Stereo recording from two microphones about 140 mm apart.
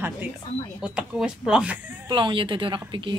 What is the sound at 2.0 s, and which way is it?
A woman's voice, 35° right (ahead or behind).